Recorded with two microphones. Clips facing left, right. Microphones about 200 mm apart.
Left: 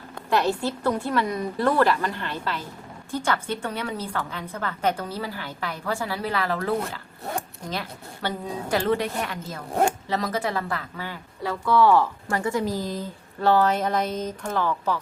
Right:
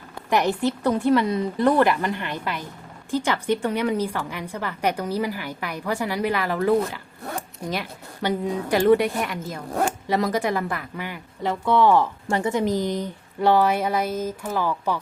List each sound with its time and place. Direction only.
0.3 s a woman's voice: 15° right (ahead or behind)